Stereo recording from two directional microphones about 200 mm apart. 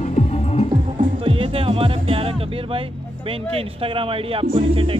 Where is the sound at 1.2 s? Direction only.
25° right (ahead or behind).